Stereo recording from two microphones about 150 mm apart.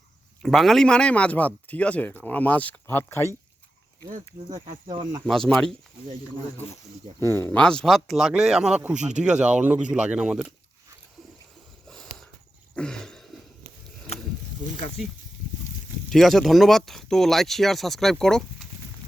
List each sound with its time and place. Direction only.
0.4 s speech: centre (ahead or behind); by 3.3 s 15° left (ahead or behind)
4.5 s speech: 60° right (ahead or behind)
5.2 s speech: 5° left (ahead or behind)
7.2 s speech: 15° left (ahead or behind); by 9.0 s 5° right (ahead or behind)
9.0 s speech: 50° right (ahead or behind)
9.2 s speech: 5° right (ahead or behind)
11.9 s a sound: centre (ahead or behind)
16.0 s speech: centre (ahead or behind)